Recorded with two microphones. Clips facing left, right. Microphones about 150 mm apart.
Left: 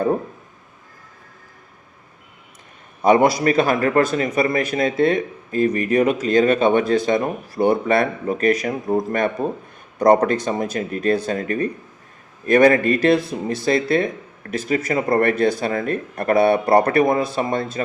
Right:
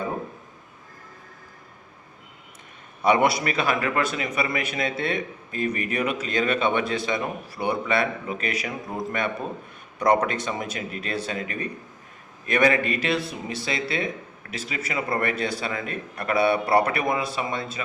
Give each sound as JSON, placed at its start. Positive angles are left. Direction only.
{"t": 3.0, "sound": "a man's voice", "side_deg": 40}